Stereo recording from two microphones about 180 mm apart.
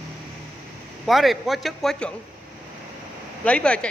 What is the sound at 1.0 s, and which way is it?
A man's voice, centre (ahead or behind).